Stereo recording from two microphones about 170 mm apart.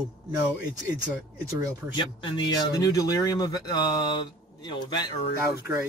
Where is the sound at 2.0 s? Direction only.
25° left (ahead or behind).